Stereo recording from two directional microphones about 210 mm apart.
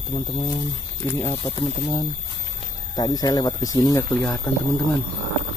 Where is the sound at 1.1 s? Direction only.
15° left (ahead or behind).